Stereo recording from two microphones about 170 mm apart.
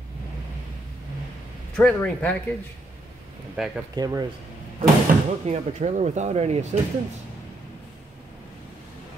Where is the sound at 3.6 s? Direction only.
Centre (ahead or behind).